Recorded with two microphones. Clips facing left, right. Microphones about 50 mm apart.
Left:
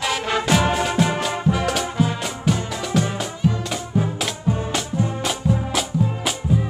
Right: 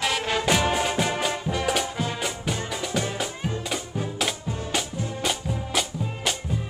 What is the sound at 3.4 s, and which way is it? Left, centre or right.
Music, right.